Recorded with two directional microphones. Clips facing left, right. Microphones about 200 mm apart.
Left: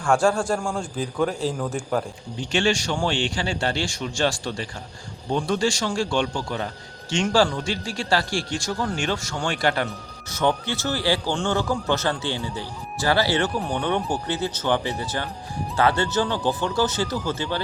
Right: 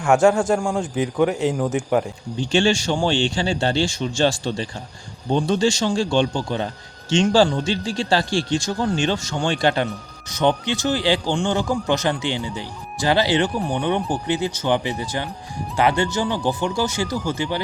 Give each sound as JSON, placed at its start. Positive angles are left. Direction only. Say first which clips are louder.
{"t": 0.0, "sound": "speech", "louder": "right 4 dB", "side_deg": -20}
{"t": 2.4, "sound": "speech", "louder": "right 4 dB", "side_deg": -25}